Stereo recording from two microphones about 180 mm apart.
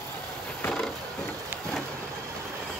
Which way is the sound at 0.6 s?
5° left (ahead or behind).